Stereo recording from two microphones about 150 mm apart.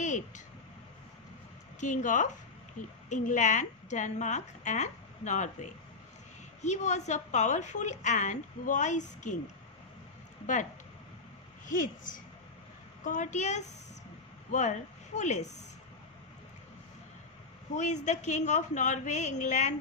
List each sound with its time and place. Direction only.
0.0 s a sound: 55° left (ahead or behind)
1.8 s a woman's voice: 55° left (ahead or behind)
10.4 s a woman's voice: 55° left (ahead or behind)
17.7 s a woman's voice: 50° left (ahead or behind)